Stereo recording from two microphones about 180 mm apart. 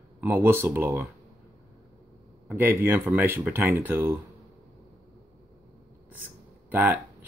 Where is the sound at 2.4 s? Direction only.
10° right (ahead or behind).